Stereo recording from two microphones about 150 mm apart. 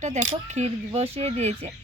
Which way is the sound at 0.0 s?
50° right (ahead or behind).